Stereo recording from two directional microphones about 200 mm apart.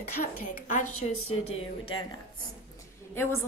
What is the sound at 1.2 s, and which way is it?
Speech, 90° left.